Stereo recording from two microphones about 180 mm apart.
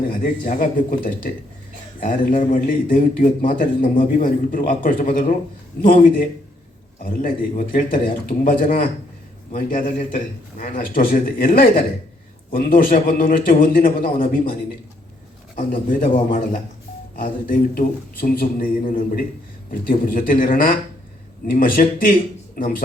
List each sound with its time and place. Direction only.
0.1 s a man's voice: 50° left (ahead or behind)
17.2 s a man's voice: 50° left (ahead or behind)